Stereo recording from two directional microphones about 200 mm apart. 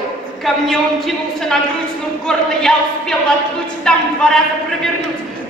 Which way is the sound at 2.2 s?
5° left (ahead or behind).